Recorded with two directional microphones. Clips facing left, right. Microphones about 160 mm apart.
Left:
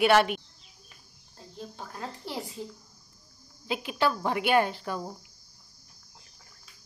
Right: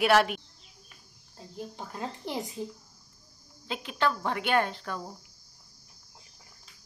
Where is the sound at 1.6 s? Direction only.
15° right (ahead or behind).